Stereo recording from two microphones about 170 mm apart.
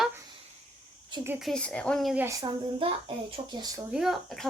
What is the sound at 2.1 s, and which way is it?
A child's voice, 20° right (ahead or behind).